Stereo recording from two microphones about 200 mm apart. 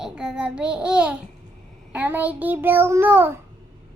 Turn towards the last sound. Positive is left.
turn(degrees=-10)  # may be behind; listen again after turning